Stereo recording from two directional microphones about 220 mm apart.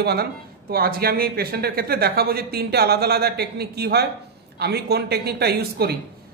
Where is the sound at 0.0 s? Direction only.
45° right (ahead or behind).